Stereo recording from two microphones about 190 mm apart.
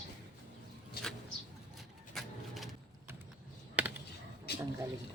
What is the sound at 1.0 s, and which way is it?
Vehicle, 55° left (ahead or behind).